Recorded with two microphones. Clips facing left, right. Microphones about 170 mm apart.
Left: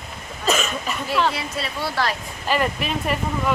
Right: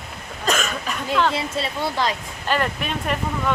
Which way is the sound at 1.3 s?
25° right (ahead or behind).